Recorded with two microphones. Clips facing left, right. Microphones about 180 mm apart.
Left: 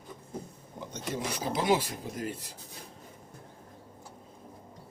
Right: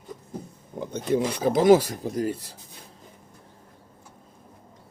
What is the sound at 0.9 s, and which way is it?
Speech, 55° right (ahead or behind).